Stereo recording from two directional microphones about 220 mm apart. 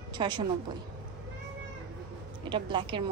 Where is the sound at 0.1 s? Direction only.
20° right (ahead or behind).